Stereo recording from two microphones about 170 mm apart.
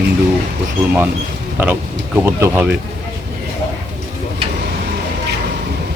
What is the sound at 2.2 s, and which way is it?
Speech, 10° right (ahead or behind).